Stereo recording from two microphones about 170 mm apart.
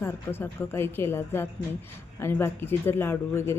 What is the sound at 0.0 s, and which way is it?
Speech, 15° left (ahead or behind).